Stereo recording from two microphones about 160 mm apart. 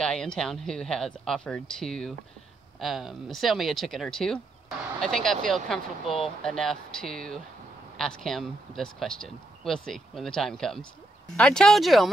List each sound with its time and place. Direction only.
0.0 s speech: 5° left (ahead or behind)